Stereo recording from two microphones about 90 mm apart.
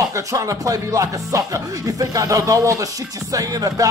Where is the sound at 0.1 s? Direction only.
35° right (ahead or behind).